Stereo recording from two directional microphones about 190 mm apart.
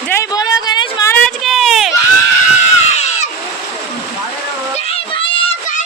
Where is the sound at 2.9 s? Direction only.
35° left (ahead or behind).